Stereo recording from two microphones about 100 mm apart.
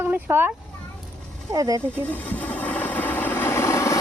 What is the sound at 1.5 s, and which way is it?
Speech, 35° right (ahead or behind).